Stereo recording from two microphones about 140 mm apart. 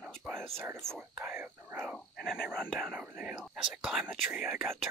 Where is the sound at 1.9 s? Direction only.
Centre (ahead or behind).